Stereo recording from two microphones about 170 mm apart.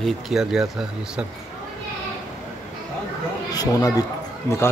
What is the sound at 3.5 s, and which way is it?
Speech, 20° left (ahead or behind).